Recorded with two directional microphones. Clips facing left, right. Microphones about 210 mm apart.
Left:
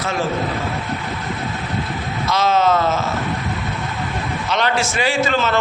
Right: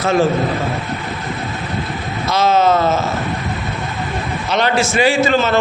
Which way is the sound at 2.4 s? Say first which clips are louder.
Right 3 dB; 5° right (ahead or behind).